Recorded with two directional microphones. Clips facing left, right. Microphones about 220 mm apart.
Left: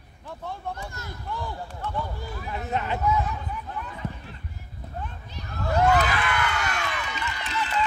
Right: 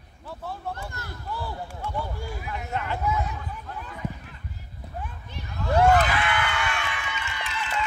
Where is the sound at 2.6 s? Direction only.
20° left (ahead or behind).